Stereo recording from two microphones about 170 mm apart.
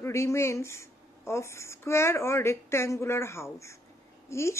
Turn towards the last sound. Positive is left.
turn(degrees=15)  # may be behind; listen again after turning